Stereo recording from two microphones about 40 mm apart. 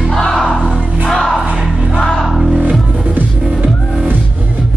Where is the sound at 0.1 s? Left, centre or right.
Centre.